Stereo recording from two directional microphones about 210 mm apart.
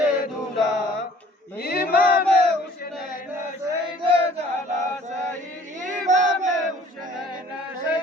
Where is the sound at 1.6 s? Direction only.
50° left (ahead or behind).